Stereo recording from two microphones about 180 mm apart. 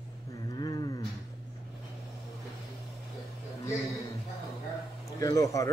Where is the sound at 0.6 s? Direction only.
20° left (ahead or behind).